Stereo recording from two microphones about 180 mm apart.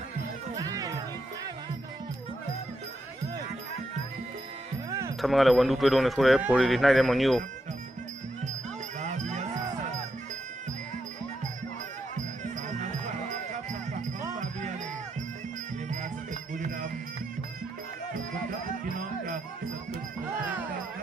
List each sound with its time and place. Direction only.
0.5 s music: 20° right (ahead or behind)
4.9 s music: 15° right (ahead or behind)
5.2 s speech: centre (ahead or behind)
9.0 s cattle: 40° right (ahead or behind)
12.7 s music: 40° right (ahead or behind)
16.0 s music: 45° right (ahead or behind)
18.9 s music: 50° right (ahead or behind)